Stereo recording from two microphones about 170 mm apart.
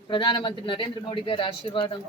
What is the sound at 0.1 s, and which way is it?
Speech, 30° left (ahead or behind).